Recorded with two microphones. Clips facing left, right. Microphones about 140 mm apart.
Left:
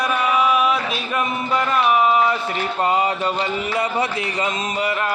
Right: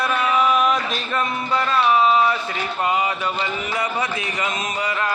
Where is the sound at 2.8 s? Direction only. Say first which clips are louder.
Left 2 dB; 35° left (ahead or behind).